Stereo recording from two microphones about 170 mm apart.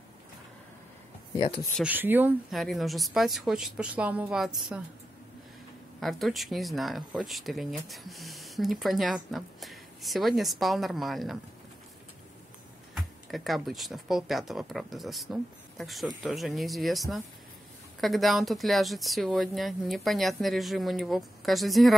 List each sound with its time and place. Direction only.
1.8 s speech: 10° right (ahead or behind)
2.5 s speech: centre (ahead or behind)
5.9 s speech: centre (ahead or behind)
12.9 s speech: centre (ahead or behind)